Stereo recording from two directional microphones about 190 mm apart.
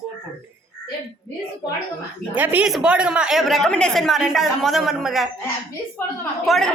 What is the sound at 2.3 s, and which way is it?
Speech, 10° right (ahead or behind).